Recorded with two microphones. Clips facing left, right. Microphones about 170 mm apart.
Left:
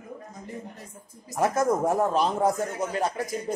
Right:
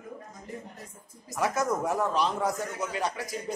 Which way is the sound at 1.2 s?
45° left (ahead or behind).